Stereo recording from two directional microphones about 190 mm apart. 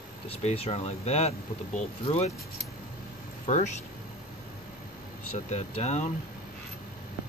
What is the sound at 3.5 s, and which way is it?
Speech, 35° left (ahead or behind).